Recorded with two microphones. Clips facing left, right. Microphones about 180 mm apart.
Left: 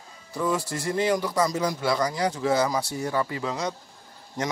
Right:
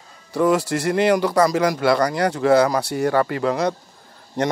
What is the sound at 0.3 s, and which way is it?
Speech, 70° right (ahead or behind).